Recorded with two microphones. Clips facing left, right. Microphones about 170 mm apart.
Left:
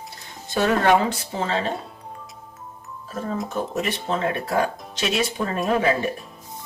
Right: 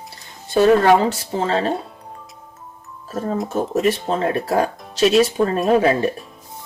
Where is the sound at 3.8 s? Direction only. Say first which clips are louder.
Right 6 dB; 40° right (ahead or behind).